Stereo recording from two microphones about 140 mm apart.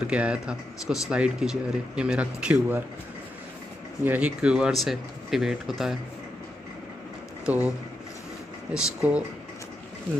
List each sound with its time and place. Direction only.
0.0 s speech: 10° right (ahead or behind)
4.0 s speech: 10° right (ahead or behind)
7.4 s speech: 10° right (ahead or behind)
8.7 s speech: 5° right (ahead or behind)